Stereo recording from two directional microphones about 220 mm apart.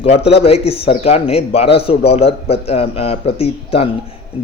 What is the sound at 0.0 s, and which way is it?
Speech, 25° left (ahead or behind).